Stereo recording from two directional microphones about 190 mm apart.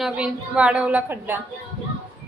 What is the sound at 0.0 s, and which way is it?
A woman's voice, 5° right (ahead or behind).